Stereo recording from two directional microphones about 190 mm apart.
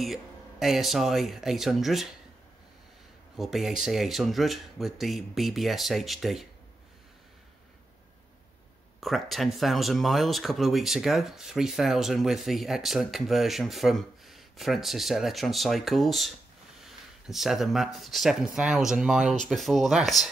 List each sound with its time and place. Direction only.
0.0 s speech: centre (ahead or behind)
3.3 s speech: centre (ahead or behind)
9.0 s speech: centre (ahead or behind)